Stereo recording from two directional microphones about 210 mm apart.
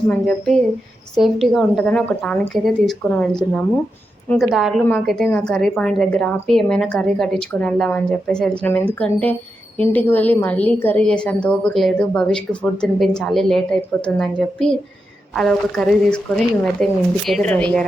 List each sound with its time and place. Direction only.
0.1 s a woman's voice: 5° left (ahead or behind)